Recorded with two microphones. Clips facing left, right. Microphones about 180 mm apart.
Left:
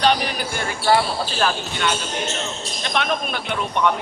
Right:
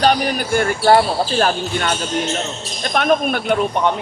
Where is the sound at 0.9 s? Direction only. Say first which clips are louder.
Right 4 dB; 45° right (ahead or behind).